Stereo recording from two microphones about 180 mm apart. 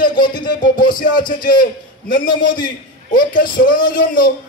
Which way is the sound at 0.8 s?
50° left (ahead or behind).